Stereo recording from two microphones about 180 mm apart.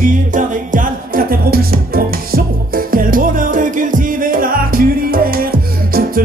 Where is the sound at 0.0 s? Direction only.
50° right (ahead or behind).